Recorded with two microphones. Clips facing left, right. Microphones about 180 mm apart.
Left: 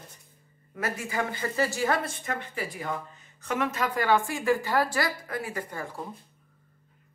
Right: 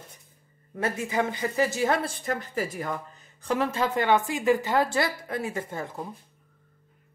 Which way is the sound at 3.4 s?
35° right (ahead or behind).